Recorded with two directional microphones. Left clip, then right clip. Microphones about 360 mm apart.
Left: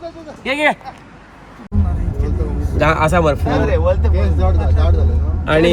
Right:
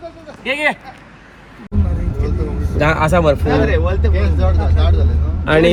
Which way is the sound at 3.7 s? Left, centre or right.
Left.